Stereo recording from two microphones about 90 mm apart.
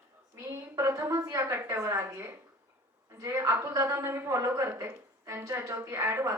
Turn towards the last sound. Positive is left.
turn(degrees=-30)  # may be behind; listen again after turning